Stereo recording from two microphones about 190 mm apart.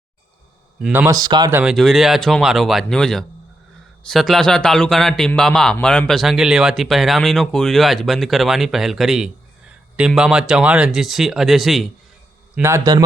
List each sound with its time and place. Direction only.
0.8 s speech: 5° right (ahead or behind)
1.0 s speech: 20° right (ahead or behind)
1.5 s speech: centre (ahead or behind)
12.5 s a man's voice: 15° right (ahead or behind)